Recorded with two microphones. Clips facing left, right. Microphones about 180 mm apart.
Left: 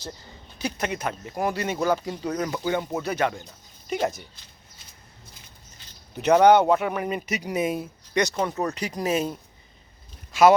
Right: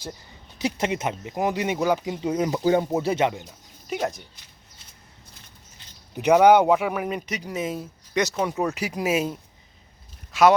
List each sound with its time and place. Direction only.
0.6 s speech: 25° right (ahead or behind)
2.6 s speech: 35° right (ahead or behind)
3.4 s a sound: 5° right (ahead or behind)
6.1 s speech: 10° right (ahead or behind); by 7.9 s 10° left (ahead or behind)
8.1 s speech: 5° right (ahead or behind)
10.3 s a man's voice: centre (ahead or behind)